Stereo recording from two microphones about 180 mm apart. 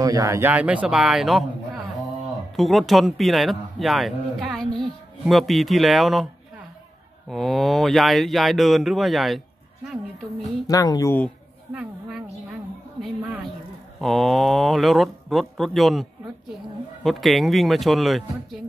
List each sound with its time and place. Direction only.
0.0 s speech: 20° right (ahead or behind); by 1.5 s centre (ahead or behind)
2.5 s a man's voice: centre (ahead or behind)
7.2 s a man's voice: centre (ahead or behind)
10.7 s speech: 20° left (ahead or behind)
11.7 s a sound: 10° right (ahead or behind)
13.0 s a man's voice: 5° right (ahead or behind)